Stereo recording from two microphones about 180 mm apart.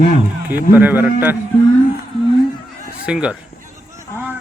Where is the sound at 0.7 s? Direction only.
10° right (ahead or behind).